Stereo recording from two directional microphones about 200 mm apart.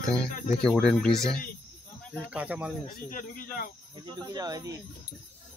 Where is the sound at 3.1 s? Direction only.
40° left (ahead or behind).